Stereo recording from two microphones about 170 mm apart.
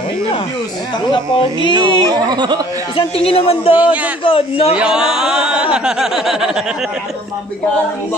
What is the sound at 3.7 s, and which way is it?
A man's voice, 10° right (ahead or behind).